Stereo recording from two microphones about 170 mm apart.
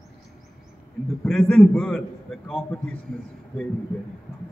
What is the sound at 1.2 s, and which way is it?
A man's voice, 5° left (ahead or behind).